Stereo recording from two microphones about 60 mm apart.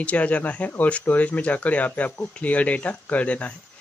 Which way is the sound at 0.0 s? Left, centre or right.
Left.